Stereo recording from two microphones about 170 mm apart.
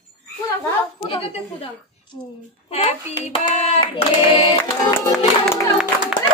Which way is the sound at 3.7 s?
30° left (ahead or behind).